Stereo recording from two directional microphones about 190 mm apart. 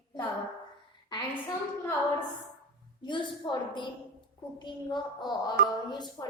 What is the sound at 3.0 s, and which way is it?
A woman's voice, 25° left (ahead or behind).